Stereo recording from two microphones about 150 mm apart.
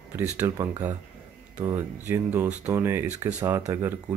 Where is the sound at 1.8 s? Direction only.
15° right (ahead or behind).